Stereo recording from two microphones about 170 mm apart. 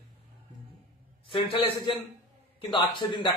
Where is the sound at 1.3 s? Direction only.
30° left (ahead or behind).